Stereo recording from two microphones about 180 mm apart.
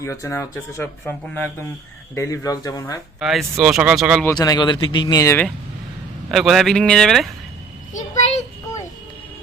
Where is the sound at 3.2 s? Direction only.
Centre (ahead or behind).